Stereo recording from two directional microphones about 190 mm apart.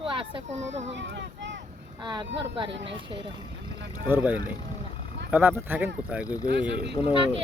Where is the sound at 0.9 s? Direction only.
70° right (ahead or behind).